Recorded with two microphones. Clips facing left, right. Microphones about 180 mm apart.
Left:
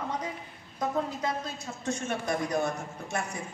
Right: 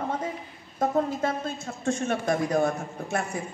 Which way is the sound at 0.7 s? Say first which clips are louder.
Right 5 dB; 50° right (ahead or behind).